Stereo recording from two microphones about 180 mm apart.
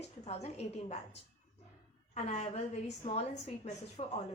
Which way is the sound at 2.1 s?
40° left (ahead or behind).